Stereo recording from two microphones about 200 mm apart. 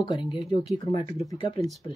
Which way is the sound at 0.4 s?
Centre (ahead or behind).